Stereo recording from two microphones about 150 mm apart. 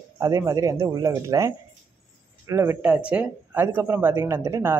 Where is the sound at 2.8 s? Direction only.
10° right (ahead or behind).